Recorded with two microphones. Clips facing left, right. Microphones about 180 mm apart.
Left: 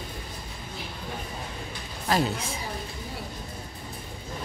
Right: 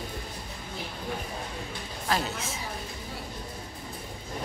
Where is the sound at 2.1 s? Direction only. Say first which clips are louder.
Left 4 dB; centre (ahead or behind).